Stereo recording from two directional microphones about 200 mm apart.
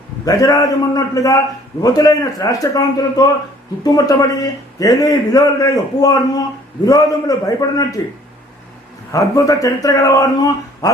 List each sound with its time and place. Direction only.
0.3 s a man's voice: 15° left (ahead or behind)
9.1 s a man's voice: 15° left (ahead or behind)